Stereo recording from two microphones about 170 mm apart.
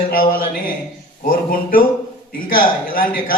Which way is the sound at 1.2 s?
55° left (ahead or behind).